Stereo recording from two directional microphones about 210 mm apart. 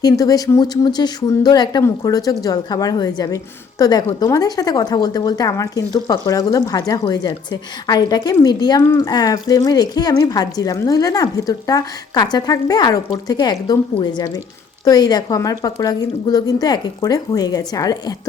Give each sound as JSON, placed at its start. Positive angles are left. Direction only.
{"t": 0.0, "sound": "speech", "side_deg": 15}